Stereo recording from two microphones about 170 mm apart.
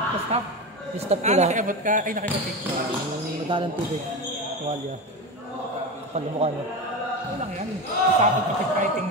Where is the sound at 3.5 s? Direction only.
30° right (ahead or behind).